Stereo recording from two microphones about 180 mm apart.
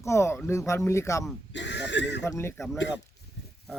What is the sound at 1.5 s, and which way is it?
Speech, 80° left.